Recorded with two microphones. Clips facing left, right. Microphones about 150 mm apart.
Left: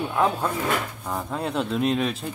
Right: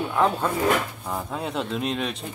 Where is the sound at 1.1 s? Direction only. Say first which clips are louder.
Left 2 dB; centre (ahead or behind).